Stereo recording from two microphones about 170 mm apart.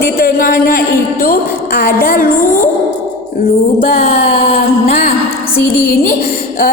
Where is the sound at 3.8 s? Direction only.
35° left (ahead or behind).